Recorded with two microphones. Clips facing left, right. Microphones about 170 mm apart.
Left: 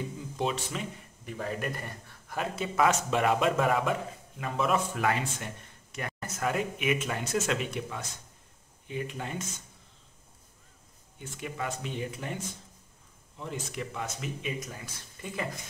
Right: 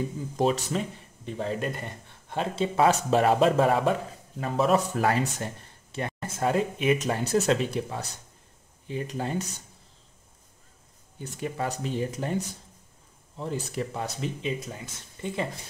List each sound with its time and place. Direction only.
0.4 s speech: 40° right (ahead or behind)
1.2 s a man's voice: 25° right (ahead or behind)
11.1 s speech: 35° right (ahead or behind)
13.7 s a man's voice: 35° right (ahead or behind)